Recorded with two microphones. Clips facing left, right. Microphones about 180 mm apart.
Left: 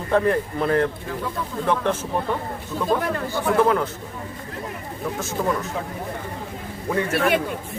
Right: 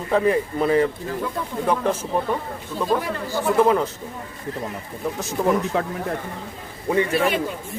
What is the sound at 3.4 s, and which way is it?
Speech, 10° right (ahead or behind).